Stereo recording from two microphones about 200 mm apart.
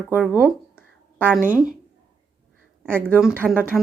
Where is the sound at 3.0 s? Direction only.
10° right (ahead or behind).